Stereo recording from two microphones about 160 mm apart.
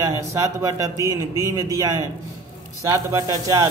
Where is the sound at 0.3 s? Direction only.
20° right (ahead or behind).